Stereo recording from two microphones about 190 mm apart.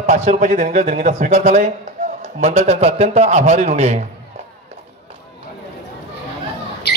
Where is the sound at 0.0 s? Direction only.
35° right (ahead or behind).